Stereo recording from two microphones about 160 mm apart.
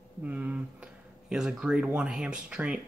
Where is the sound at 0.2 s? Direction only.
10° right (ahead or behind).